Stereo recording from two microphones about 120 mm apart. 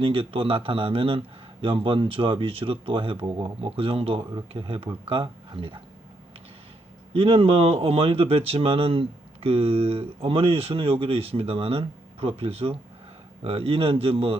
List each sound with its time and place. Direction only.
0.0 s speech: 50° right (ahead or behind)
7.1 s speech: 50° right (ahead or behind)